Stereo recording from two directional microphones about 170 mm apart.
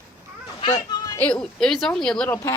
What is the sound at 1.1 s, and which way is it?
Speech, 10° left (ahead or behind).